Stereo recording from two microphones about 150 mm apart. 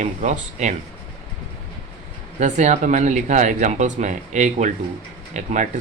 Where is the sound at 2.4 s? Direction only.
55° right (ahead or behind).